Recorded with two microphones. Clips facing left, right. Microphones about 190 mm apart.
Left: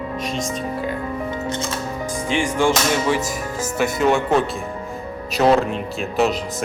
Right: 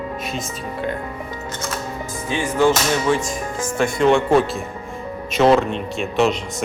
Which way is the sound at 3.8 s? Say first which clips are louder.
Right 2 dB; 5° left (ahead or behind).